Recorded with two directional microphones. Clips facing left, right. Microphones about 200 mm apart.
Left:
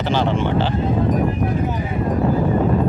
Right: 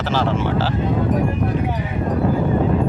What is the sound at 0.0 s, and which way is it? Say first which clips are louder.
Speech: left 1 dB; centre (ahead or behind).